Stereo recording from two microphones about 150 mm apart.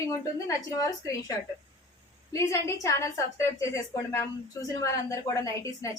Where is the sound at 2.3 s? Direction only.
20° left (ahead or behind).